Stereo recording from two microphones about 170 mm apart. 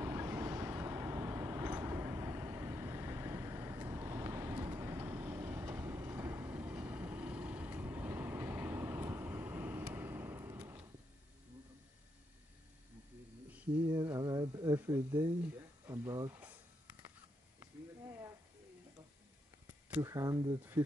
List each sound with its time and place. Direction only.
0.0 s vehicle: 15° right (ahead or behind)
13.8 s speech: 20° right (ahead or behind)
20.0 s speech: 20° right (ahead or behind)
20.8 s speech: 10° right (ahead or behind)